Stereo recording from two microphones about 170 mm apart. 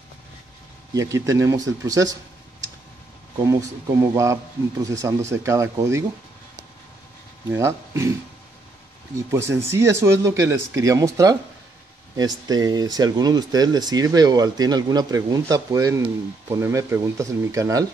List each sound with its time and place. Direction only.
0.9 s speech: 20° right (ahead or behind)
4.0 s speech: 15° right (ahead or behind)
7.5 s speech: 15° right (ahead or behind)
9.3 s speech: 15° right (ahead or behind)
12.4 s speech: 20° right (ahead or behind)